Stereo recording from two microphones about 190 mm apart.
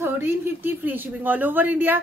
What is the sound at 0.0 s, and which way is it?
Speech, 10° right (ahead or behind).